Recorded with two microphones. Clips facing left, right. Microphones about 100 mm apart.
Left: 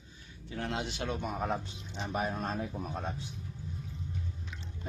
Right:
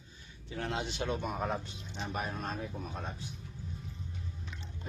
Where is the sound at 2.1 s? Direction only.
30° left (ahead or behind).